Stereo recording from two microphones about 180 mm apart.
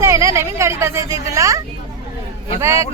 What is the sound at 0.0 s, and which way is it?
Speech, 15° right (ahead or behind).